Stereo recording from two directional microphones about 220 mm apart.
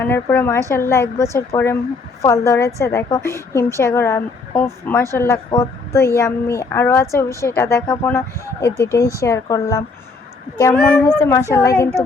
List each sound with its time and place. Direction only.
0.0 s a woman's voice: 10° left (ahead or behind)